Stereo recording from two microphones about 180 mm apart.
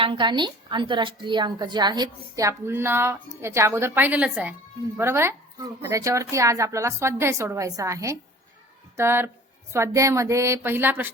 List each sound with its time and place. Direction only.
0.0 s a woman's voice: 25° right (ahead or behind)